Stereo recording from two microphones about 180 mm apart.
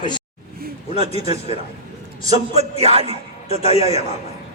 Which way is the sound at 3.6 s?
35° left (ahead or behind).